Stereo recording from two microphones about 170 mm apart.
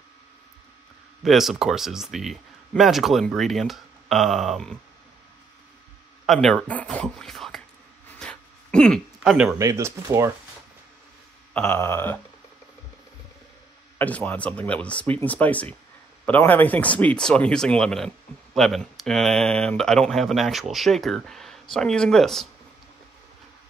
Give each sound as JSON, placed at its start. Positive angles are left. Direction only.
{"t": 1.2, "sound": "speech", "side_deg": 0}
{"t": 6.2, "sound": "speech", "side_deg": 0}
{"t": 8.2, "sound": "a sound", "side_deg": 5}
{"t": 9.6, "sound": "speech", "side_deg": -20}
{"t": 11.5, "sound": "speech", "side_deg": 10}
{"t": 13.9, "sound": "speech", "side_deg": 10}